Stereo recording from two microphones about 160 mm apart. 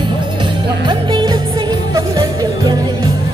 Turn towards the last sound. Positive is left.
turn(degrees=-25)  # may be behind; listen again after turning